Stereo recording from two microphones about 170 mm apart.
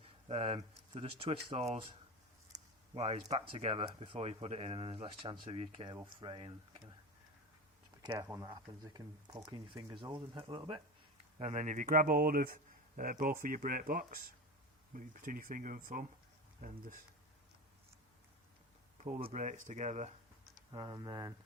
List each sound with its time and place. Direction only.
0.0 s speech: 35° right (ahead or behind)
2.9 s speech: 40° right (ahead or behind)
8.2 s speech: 20° right (ahead or behind)
11.3 s speech: 40° right (ahead or behind)
19.2 s speech: 45° right (ahead or behind)
20.7 s speech: 20° right (ahead or behind)